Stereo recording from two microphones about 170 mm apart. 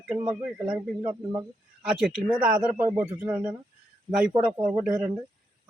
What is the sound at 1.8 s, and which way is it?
Speech, 5° right (ahead or behind).